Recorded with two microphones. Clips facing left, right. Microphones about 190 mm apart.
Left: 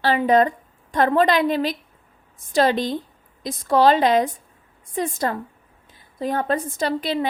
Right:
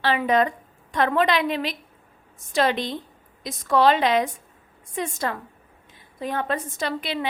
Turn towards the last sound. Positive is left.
turn(degrees=35)  # may be behind; listen again after turning